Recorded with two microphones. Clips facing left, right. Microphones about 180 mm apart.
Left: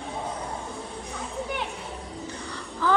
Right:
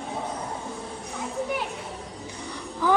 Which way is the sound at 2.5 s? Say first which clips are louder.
Right 2 dB; 15° right (ahead or behind).